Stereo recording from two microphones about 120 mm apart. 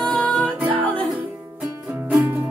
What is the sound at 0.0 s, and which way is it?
Music, 10° left (ahead or behind).